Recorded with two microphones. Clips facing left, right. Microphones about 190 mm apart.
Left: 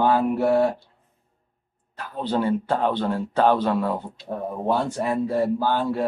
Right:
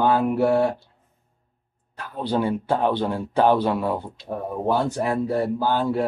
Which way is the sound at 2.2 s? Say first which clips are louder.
Even; 10° right (ahead or behind).